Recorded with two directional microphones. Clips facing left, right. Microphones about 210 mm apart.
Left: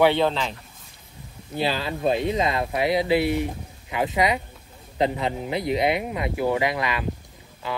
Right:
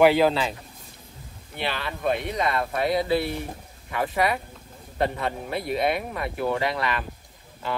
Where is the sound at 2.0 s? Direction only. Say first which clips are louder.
Left 3 dB; 20° left (ahead or behind).